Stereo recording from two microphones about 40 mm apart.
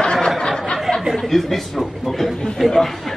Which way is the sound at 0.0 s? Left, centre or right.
Centre.